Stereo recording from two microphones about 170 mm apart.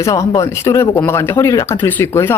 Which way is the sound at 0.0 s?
20° left (ahead or behind).